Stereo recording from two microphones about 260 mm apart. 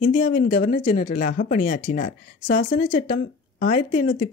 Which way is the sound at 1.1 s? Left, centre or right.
Left.